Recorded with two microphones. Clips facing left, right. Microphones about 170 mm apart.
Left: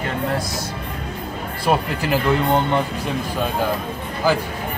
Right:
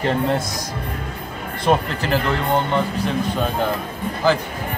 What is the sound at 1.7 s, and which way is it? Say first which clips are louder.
Speech: right 1 dB; 10° left (ahead or behind).